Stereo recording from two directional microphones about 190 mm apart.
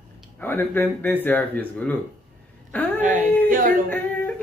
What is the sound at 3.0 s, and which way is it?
Speech, 10° right (ahead or behind).